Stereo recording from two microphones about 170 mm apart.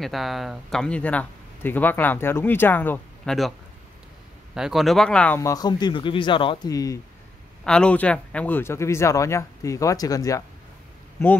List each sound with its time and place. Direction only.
0.0 s speech: centre (ahead or behind)
4.6 s speech: centre (ahead or behind); by 7.0 s 20° left (ahead or behind)
7.6 s speech: 5° left (ahead or behind)